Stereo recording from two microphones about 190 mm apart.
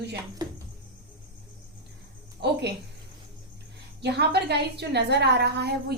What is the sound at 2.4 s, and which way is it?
Speech, 55° right (ahead or behind).